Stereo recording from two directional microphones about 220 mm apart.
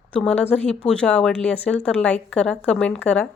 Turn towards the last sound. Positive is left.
turn(degrees=5)  # may be behind; listen again after turning